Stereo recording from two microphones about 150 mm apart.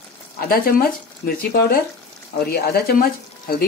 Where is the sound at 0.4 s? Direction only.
80° left.